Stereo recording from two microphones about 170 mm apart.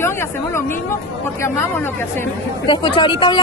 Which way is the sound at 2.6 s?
30° left (ahead or behind).